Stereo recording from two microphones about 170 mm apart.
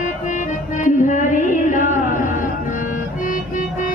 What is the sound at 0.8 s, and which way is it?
Music, 50° left (ahead or behind).